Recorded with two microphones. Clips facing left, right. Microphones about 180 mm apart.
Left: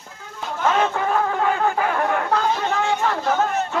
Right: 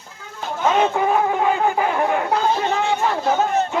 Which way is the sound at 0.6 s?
15° right (ahead or behind).